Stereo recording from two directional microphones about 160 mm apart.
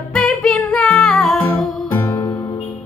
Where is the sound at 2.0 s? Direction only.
20° left (ahead or behind).